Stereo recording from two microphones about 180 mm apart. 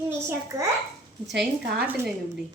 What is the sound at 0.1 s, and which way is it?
Speech, 15° right (ahead or behind).